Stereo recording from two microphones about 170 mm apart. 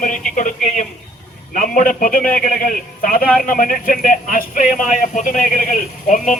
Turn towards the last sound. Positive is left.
turn(degrees=50)  # may be behind; listen again after turning